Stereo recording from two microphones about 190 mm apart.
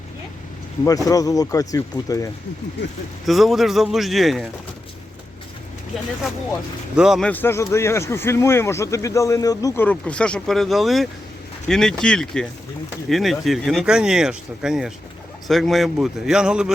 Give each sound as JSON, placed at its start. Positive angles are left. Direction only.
{"t": 1.0, "sound": "speech", "side_deg": 20}
{"t": 3.2, "sound": "speech", "side_deg": 0}
{"t": 6.9, "sound": "speech", "side_deg": 0}